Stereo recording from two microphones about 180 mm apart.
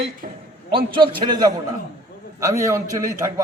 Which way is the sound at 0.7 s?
30° right (ahead or behind).